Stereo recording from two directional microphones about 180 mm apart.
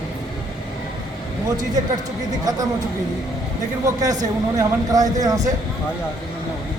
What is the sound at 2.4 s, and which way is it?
Speech, 20° right (ahead or behind).